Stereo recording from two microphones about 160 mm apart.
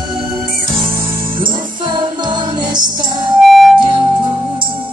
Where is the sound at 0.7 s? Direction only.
35° right (ahead or behind).